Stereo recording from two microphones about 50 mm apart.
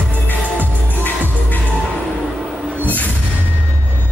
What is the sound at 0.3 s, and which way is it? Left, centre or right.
Music, left.